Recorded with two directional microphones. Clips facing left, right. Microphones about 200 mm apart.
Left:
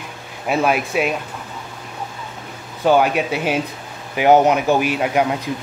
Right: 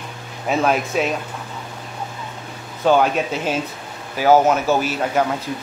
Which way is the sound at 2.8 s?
10° left (ahead or behind).